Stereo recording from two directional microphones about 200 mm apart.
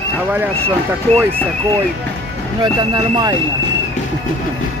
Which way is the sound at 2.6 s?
20° right (ahead or behind).